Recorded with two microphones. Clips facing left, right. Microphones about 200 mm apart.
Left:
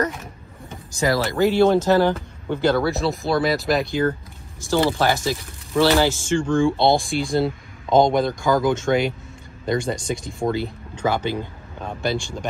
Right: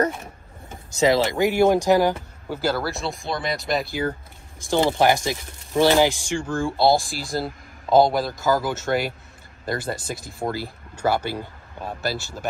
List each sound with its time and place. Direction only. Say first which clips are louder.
0.9 s speech: right 2 dB; 20° right (ahead or behind)
4.6 s speech: even; 15° right (ahead or behind)